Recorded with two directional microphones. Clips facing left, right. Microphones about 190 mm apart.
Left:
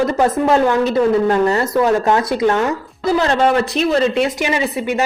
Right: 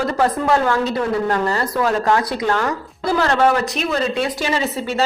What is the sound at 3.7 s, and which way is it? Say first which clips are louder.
Speech: left 5 dB; 30° left (ahead or behind).